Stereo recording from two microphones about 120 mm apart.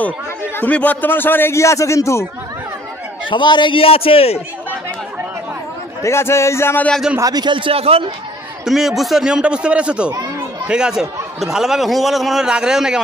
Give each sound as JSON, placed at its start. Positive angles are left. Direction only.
{"t": 0.6, "sound": "a man's voice", "side_deg": 15}
{"t": 3.3, "sound": "a man's voice", "side_deg": 40}
{"t": 6.0, "sound": "a man's voice", "side_deg": 20}
{"t": 6.9, "sound": "a man's voice", "side_deg": -5}
{"t": 7.2, "sound": "speech", "side_deg": -30}
{"t": 8.6, "sound": "a man's voice", "side_deg": 0}